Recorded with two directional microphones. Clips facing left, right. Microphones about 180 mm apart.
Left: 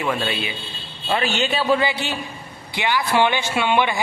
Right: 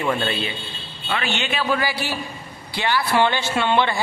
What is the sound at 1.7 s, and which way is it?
A man's voice, 20° left (ahead or behind).